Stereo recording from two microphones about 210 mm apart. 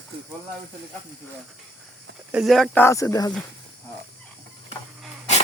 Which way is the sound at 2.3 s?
Centre (ahead or behind).